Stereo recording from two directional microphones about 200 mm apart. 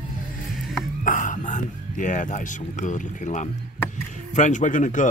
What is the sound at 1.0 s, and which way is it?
Speech, 40° left (ahead or behind).